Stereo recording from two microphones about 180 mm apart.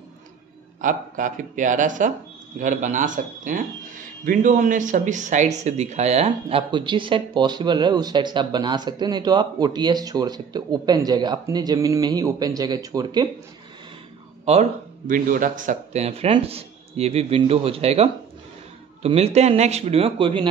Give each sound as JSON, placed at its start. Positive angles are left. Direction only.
{"t": 0.7, "sound": "a man's voice", "side_deg": -45}
{"t": 14.4, "sound": "a man's voice", "side_deg": -40}